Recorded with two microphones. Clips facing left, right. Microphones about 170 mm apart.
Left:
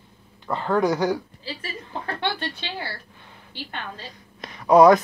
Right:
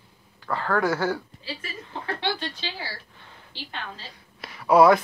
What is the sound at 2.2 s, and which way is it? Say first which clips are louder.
Speech: left 2 dB; 55° left (ahead or behind).